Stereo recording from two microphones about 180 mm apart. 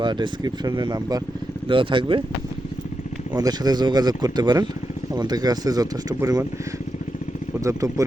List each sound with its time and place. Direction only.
0.0 s speech: 25° right (ahead or behind)
3.3 s speech: 20° right (ahead or behind)
7.6 s speech: 20° right (ahead or behind)